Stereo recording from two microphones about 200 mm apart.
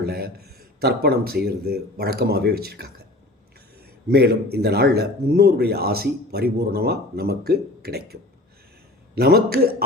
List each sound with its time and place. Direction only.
0.0 s speech: 50° right (ahead or behind)
4.1 s speech: 55° right (ahead or behind)